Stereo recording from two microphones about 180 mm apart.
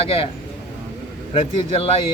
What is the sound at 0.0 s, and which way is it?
Speech, 30° left (ahead or behind).